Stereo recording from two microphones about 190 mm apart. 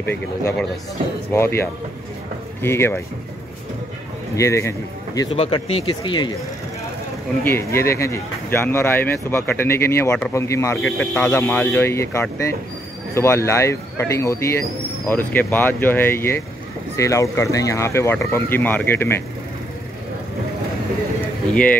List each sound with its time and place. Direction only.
0.1 s speech: 15° left (ahead or behind)
4.4 s speech: 15° left (ahead or behind)
5.3 s speech: 30° left (ahead or behind)
7.4 s speech: 15° left (ahead or behind)